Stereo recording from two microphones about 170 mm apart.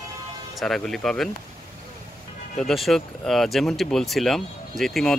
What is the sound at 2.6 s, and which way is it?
Speech, centre (ahead or behind).